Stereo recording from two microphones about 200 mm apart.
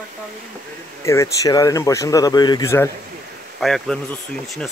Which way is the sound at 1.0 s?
15° left (ahead or behind).